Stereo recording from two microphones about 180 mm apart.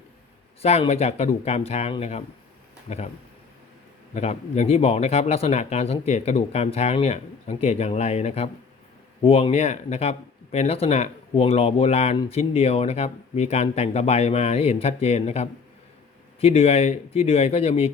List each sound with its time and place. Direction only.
0.6 s speech: 35° left (ahead or behind)
4.1 s speech: 35° left (ahead or behind)